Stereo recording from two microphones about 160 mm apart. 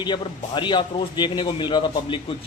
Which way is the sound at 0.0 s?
30° left (ahead or behind).